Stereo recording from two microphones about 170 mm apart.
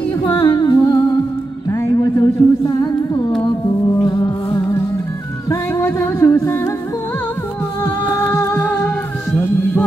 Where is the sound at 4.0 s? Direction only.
20° left (ahead or behind).